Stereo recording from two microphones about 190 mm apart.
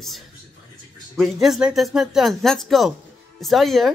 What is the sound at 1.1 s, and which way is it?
A woman's voice, centre (ahead or behind).